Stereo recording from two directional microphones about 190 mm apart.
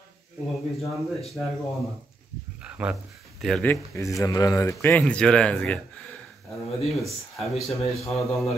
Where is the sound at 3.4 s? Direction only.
5° left (ahead or behind).